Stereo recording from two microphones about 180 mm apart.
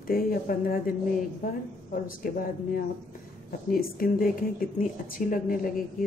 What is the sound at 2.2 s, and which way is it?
Speech, 50° left (ahead or behind).